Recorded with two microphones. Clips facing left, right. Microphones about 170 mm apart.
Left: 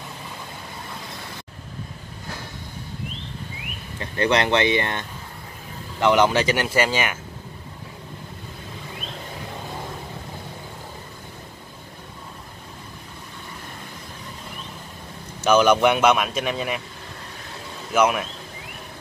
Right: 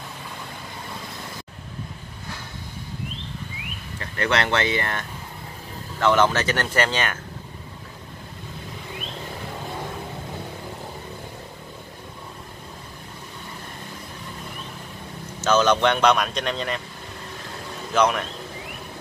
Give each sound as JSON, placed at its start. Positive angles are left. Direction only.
{"t": 4.0, "sound": "speech", "side_deg": 20}
{"t": 15.4, "sound": "speech", "side_deg": 10}
{"t": 17.9, "sound": "speech", "side_deg": 10}